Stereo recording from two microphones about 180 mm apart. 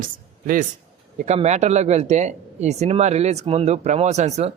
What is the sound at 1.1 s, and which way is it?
Speech, 40° right (ahead or behind).